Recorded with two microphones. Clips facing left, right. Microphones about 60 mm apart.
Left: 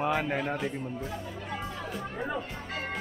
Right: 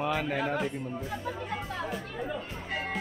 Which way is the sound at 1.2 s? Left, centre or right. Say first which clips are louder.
Right 2 dB; right.